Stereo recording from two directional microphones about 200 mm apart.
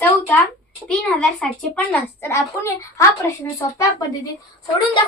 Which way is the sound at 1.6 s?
5° left (ahead or behind).